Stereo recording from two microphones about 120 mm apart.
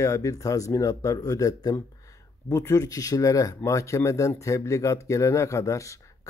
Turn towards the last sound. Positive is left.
turn(degrees=25)  # may be behind; listen again after turning